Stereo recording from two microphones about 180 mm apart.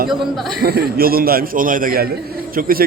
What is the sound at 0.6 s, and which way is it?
A man's voice, 60° right (ahead or behind).